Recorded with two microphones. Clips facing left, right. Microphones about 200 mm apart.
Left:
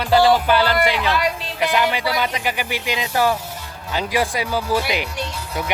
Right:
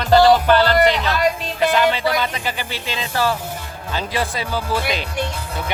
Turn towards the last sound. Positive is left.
turn(degrees=15)  # may be behind; listen again after turning